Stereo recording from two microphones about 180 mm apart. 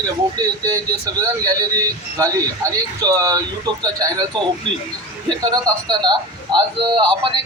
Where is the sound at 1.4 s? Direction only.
20° right (ahead or behind).